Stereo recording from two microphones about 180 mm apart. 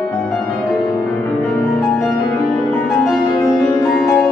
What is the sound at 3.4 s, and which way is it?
Music, 15° left (ahead or behind).